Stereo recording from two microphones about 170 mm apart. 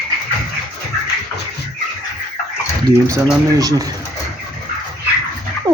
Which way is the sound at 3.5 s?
20° right (ahead or behind).